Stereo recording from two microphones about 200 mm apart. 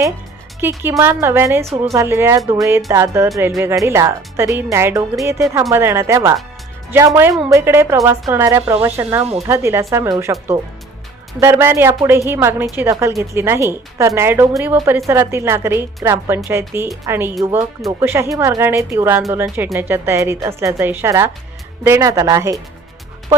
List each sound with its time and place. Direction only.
0.6 s speech: 10° right (ahead or behind)
11.3 s speech: 10° right (ahead or behind)